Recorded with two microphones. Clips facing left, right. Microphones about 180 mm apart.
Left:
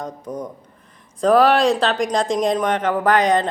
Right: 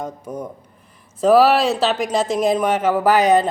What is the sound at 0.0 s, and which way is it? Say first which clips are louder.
A woman's voice: even; 10° right (ahead or behind).